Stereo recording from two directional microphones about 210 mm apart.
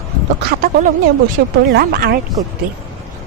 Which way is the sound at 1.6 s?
50° right (ahead or behind).